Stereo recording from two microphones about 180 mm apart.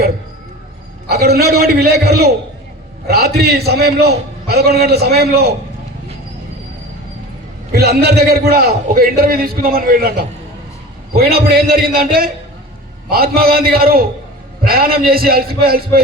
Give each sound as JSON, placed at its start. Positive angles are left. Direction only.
{"t": 1.0, "sound": "a man's voice", "side_deg": -60}
{"t": 7.7, "sound": "a man's voice", "side_deg": -60}